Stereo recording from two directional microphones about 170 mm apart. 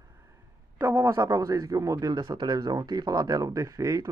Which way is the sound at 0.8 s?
10° right (ahead or behind).